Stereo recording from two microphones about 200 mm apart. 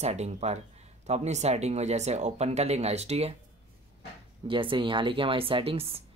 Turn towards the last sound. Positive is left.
turn(degrees=-30)  # may be behind; listen again after turning